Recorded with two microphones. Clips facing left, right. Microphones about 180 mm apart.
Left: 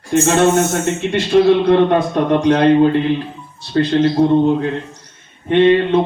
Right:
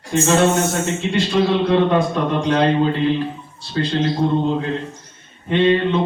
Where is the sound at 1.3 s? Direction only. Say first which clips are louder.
Left 7 dB; 55° left (ahead or behind).